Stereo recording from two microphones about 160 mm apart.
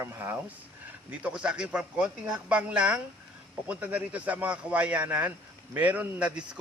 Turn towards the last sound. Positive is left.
turn(degrees=-5)  # may be behind; listen again after turning